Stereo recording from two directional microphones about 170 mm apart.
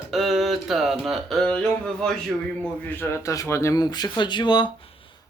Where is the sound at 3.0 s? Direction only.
15° left (ahead or behind).